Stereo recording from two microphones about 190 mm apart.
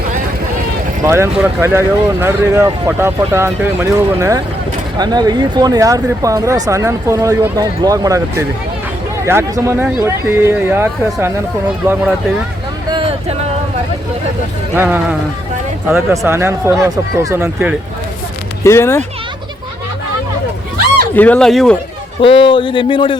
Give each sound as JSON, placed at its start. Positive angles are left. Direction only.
{"t": 1.0, "sound": "speech", "side_deg": -15}
{"t": 12.9, "sound": "a sound", "side_deg": -30}
{"t": 14.8, "sound": "speech", "side_deg": -10}
{"t": 18.6, "sound": "speech", "side_deg": 15}
{"t": 21.2, "sound": "speech", "side_deg": 5}
{"t": 22.2, "sound": "speech", "side_deg": 30}